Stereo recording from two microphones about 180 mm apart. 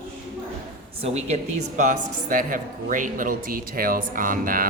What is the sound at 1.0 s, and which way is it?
A woman's voice, 35° right (ahead or behind).